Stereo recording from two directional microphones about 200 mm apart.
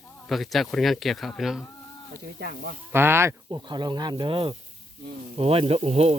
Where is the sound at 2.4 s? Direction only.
55° right (ahead or behind).